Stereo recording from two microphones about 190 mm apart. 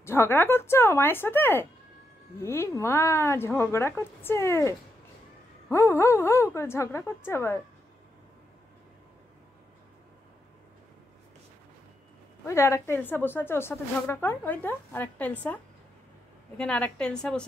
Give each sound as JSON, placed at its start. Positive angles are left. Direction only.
{"t": 0.0, "sound": "speech", "side_deg": 15}
{"t": 12.4, "sound": "a woman's voice", "side_deg": 15}